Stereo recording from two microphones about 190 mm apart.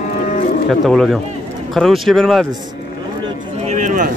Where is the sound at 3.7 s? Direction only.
40° right (ahead or behind).